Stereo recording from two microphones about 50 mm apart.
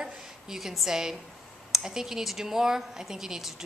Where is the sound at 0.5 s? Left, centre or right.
Centre.